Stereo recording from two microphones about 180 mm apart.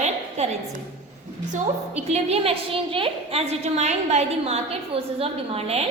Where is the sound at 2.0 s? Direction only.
35° right (ahead or behind).